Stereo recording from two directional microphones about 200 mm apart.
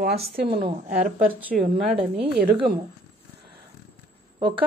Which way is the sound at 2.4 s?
50° right (ahead or behind).